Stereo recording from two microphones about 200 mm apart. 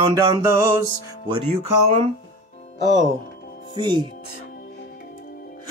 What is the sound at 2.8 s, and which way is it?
Speech, 65° right (ahead or behind).